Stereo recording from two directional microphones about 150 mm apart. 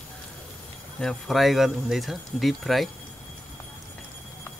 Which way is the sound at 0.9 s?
Centre (ahead or behind).